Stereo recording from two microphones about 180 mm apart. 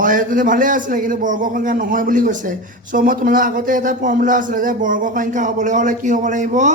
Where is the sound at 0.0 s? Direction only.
50° right (ahead or behind).